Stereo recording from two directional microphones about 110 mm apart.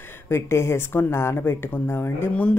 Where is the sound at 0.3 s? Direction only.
25° left (ahead or behind).